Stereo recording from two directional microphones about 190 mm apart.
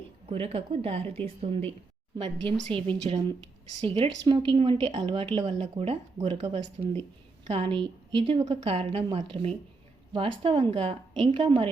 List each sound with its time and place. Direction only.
0.3 s a woman's voice: 30° right (ahead or behind)